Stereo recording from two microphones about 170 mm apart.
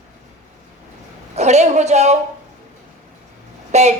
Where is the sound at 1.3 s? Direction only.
40° right (ahead or behind).